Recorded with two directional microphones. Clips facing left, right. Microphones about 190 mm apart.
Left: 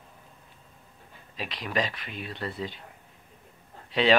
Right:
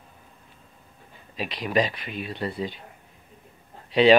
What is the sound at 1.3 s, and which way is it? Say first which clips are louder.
Speech: right 6 dB; 15° right (ahead or behind).